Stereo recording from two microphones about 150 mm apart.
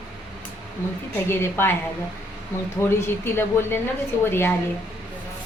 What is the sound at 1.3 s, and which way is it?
Speech, 15° left (ahead or behind).